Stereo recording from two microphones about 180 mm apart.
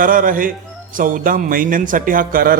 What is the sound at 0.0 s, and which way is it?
Speech, 50° right (ahead or behind).